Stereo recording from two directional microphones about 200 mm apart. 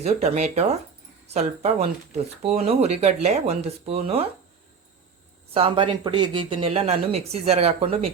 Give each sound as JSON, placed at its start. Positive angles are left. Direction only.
{"t": 0.0, "sound": "speech", "side_deg": -35}
{"t": 5.5, "sound": "speech", "side_deg": -25}